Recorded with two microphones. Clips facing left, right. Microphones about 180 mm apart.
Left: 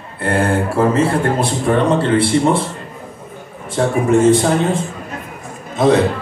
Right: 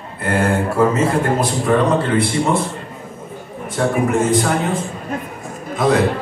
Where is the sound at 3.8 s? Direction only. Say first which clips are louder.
Left 2 dB; 30° left (ahead or behind).